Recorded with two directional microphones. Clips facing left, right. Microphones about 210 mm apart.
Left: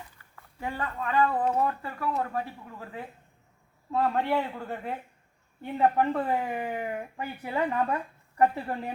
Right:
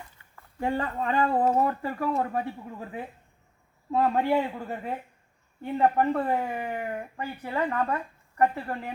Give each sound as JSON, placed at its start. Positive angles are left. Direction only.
{"t": 0.6, "sound": "a man's voice", "side_deg": -30}
{"t": 7.2, "sound": "speech", "side_deg": 15}